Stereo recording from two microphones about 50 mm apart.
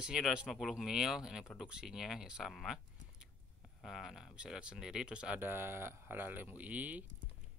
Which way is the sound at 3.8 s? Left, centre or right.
Centre.